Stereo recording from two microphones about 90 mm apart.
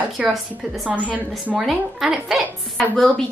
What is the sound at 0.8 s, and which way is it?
Speech, 15° right (ahead or behind).